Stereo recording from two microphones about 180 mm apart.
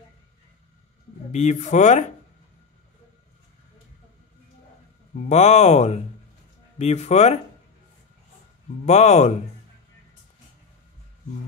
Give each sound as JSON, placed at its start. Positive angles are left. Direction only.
{"t": 1.3, "sound": "speech", "side_deg": 40}
{"t": 5.1, "sound": "speech", "side_deg": 40}
{"t": 8.8, "sound": "speech", "side_deg": 40}